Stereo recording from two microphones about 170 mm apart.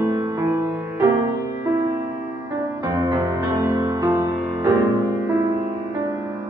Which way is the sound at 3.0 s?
25° right (ahead or behind).